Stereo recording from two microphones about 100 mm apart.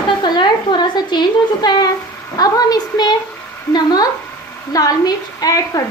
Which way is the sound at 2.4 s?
40° left (ahead or behind).